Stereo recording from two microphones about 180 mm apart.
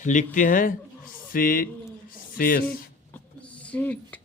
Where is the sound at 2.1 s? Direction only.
50° left (ahead or behind).